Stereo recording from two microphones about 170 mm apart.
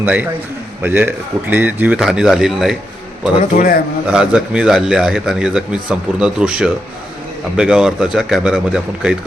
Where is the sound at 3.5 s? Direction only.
55° left (ahead or behind).